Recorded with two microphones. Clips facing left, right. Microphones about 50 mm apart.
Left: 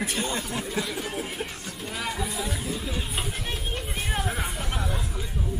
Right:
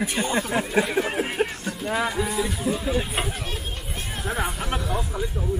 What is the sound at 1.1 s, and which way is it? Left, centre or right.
Music, right.